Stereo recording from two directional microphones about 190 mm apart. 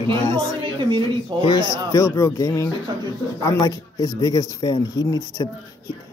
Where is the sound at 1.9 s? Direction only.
15° left (ahead or behind).